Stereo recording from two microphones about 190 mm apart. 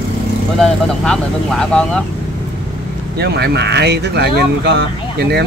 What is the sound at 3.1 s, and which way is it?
Speech, 60° right (ahead or behind).